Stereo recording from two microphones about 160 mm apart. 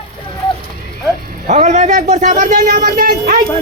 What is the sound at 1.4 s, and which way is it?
A man's voice, 50° right (ahead or behind).